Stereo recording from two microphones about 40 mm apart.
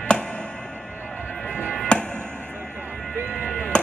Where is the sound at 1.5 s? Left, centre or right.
Left.